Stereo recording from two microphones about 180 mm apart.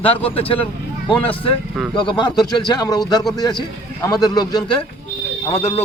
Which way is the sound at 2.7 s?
20° left (ahead or behind).